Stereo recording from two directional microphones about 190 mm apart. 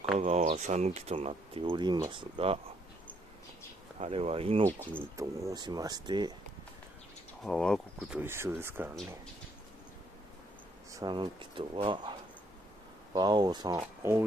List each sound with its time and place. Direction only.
0.2 s speech: 35° right (ahead or behind)
4.0 s speech: 35° right (ahead or behind)
4.7 s speech: 10° left (ahead or behind)
5.1 s speech: 15° right (ahead or behind)
7.4 s speech: 5° left (ahead or behind)
8.2 s speech: 10° right (ahead or behind)
10.9 s speech: 20° right (ahead or behind)